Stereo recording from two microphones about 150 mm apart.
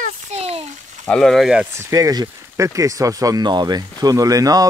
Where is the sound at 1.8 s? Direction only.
20° right (ahead or behind).